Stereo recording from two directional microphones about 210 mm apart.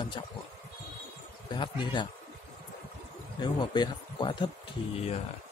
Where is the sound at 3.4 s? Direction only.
20° left (ahead or behind).